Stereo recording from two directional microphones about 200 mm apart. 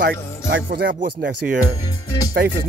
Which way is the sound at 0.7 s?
50° right (ahead or behind).